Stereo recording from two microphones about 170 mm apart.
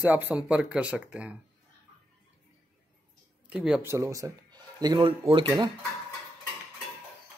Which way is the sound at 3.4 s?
5° right (ahead or behind).